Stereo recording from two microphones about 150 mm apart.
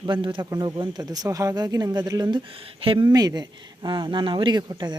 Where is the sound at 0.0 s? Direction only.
35° right (ahead or behind).